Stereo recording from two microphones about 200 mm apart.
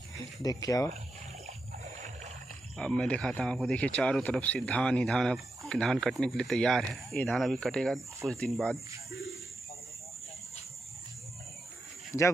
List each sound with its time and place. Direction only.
0.4 s speech: 20° left (ahead or behind)
2.8 s a man's voice: 5° left (ahead or behind)